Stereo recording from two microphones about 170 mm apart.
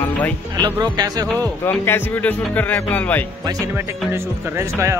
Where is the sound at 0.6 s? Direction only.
25° right (ahead or behind).